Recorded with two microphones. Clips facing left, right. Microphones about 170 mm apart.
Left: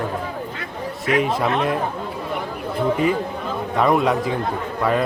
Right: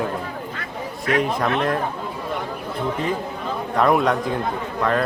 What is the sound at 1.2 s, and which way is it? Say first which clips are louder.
Speech: even; 5° left (ahead or behind).